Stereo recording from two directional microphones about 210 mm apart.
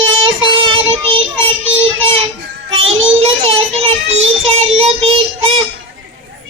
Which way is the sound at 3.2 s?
30° right (ahead or behind).